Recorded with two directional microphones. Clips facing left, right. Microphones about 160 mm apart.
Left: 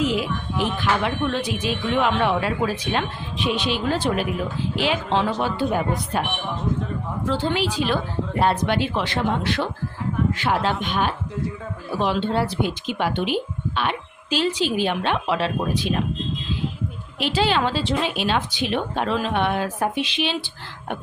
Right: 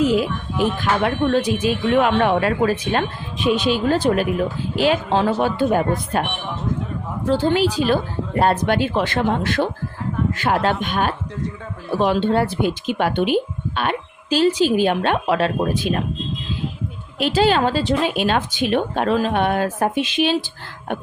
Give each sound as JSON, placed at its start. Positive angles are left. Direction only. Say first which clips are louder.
{"t": 0.2, "sound": "speech", "louder": "right 4 dB", "side_deg": 0}
{"t": 0.8, "sound": "speech", "louder": "right 3 dB", "side_deg": -45}
{"t": 7.3, "sound": "speech", "louder": "right 6 dB", "side_deg": -40}
{"t": 17.2, "sound": "speech", "louder": "right 4 dB", "side_deg": -45}